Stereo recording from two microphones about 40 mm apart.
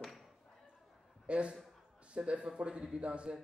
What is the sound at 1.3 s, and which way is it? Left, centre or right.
Speech, right.